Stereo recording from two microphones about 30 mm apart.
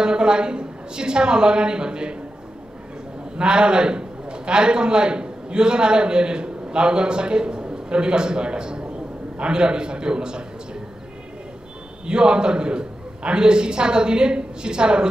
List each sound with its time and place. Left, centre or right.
0.0 s a woman's voice: right
3.3 s a man's voice: right
8.8 s a sound: right
9.5 s a man's voice: right
12.1 s a man's voice: right